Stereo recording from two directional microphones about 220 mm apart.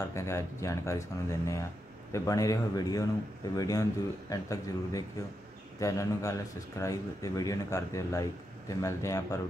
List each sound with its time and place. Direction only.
0.1 s speech: 15° left (ahead or behind)